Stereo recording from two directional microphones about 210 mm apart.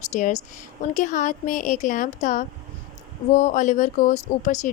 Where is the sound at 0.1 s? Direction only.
35° left (ahead or behind).